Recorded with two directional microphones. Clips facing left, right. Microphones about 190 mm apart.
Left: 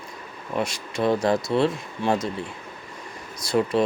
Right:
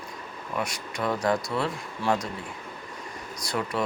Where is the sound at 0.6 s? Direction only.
25° left (ahead or behind).